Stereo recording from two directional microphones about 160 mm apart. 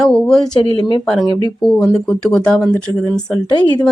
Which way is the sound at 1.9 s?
5° left (ahead or behind).